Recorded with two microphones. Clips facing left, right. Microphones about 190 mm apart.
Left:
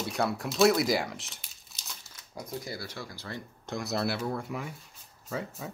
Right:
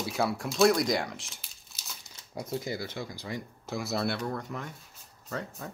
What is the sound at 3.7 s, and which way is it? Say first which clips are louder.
Speech: even; centre (ahead or behind).